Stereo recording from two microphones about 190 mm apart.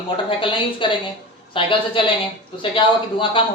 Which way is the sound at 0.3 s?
25° left (ahead or behind).